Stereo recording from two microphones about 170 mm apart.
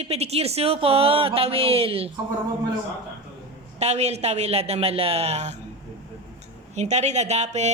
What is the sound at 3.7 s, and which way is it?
A woman's voice, 40° right (ahead or behind).